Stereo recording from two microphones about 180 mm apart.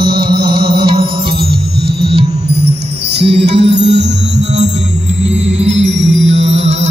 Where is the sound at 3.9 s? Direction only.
75° right (ahead or behind).